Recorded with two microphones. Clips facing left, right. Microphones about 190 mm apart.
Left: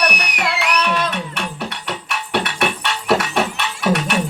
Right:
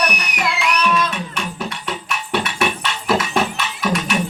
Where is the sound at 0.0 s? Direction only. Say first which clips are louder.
Left 1 dB; 70° left (ahead or behind).